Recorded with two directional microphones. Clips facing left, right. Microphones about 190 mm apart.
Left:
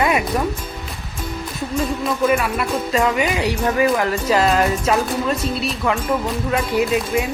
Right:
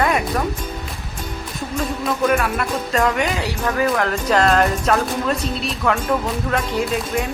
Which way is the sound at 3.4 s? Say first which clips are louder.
Left 3 dB; 15° left (ahead or behind).